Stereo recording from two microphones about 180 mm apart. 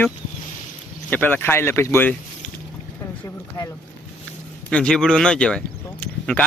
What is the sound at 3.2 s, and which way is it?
Speech, 20° left (ahead or behind).